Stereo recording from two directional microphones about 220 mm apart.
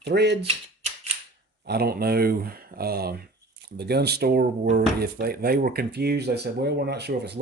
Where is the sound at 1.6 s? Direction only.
45° right (ahead or behind).